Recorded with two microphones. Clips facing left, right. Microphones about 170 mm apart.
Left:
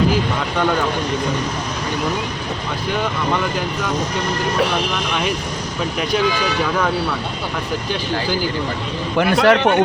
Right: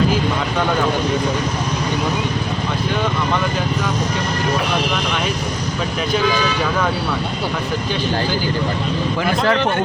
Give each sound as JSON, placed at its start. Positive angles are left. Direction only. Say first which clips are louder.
{"t": 9.1, "sound": "speech", "louder": "left 5 dB", "side_deg": 70}